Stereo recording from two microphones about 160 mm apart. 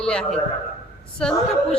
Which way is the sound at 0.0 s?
5° left (ahead or behind).